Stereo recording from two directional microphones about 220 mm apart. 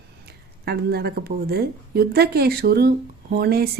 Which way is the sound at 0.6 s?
45° right (ahead or behind).